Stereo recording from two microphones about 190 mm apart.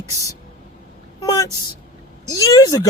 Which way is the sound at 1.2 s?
20° left (ahead or behind).